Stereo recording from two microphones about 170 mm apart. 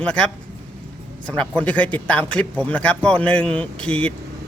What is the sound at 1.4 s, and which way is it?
Speech, 10° left (ahead or behind).